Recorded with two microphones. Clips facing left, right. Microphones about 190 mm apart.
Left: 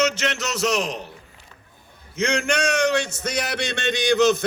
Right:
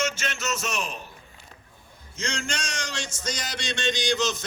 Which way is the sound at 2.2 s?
60° left (ahead or behind).